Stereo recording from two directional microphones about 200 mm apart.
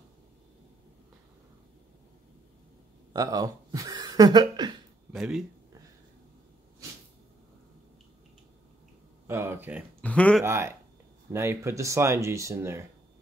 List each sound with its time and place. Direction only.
3.1 s speech: 20° right (ahead or behind)
5.1 s speech: centre (ahead or behind)
9.3 s speech: 10° right (ahead or behind)
10.0 s speech: 5° left (ahead or behind)
10.4 s speech: 10° right (ahead or behind)